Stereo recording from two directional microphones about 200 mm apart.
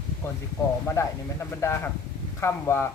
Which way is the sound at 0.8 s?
15° left (ahead or behind).